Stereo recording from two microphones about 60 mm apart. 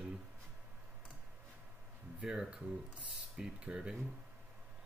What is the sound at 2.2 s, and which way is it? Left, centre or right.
Speech, centre.